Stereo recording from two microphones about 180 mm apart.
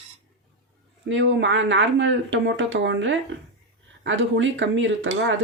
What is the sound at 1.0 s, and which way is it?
Dishes, 90° right.